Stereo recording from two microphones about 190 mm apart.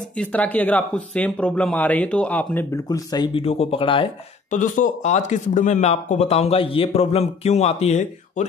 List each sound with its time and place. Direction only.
0.2 s speech: 5° left (ahead or behind); by 4.1 s 30° left (ahead or behind)
4.5 s speech: 40° left (ahead or behind)